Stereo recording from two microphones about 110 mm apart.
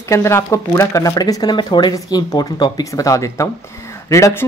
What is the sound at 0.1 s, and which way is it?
Speech, 25° left (ahead or behind).